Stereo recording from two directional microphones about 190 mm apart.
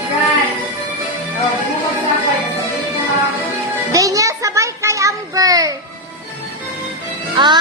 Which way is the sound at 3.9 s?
20° right (ahead or behind).